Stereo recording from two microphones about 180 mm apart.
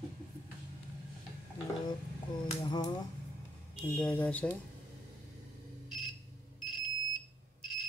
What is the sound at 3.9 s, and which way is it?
Speech, 10° left (ahead or behind).